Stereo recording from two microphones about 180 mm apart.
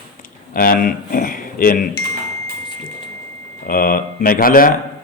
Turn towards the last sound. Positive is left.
turn(degrees=50)  # may be behind; listen again after turning